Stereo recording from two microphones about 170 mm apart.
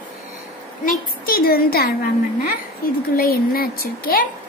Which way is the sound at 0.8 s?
60° left (ahead or behind).